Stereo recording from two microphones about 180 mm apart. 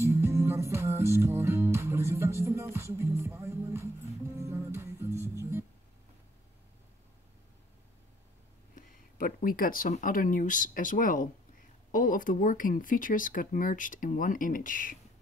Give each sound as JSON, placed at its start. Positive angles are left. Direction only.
{"t": 0.0, "sound": "music", "side_deg": -15}
{"t": 5.1, "sound": "music", "side_deg": 15}
{"t": 5.4, "sound": "music", "side_deg": -15}
{"t": 8.7, "sound": "speech", "side_deg": 50}